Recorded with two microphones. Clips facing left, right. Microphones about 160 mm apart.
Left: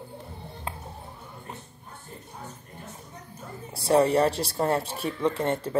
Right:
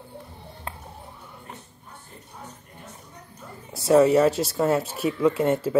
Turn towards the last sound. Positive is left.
turn(degrees=-5)  # may be behind; listen again after turning